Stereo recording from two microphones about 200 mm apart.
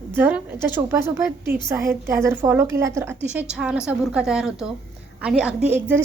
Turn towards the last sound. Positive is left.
turn(degrees=-10)  # may be behind; listen again after turning